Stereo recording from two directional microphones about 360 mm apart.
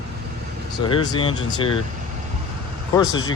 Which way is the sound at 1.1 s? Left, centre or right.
Centre.